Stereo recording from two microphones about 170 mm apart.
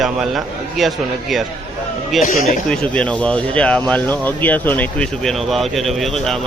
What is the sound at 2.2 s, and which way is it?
Speech, 50° left (ahead or behind).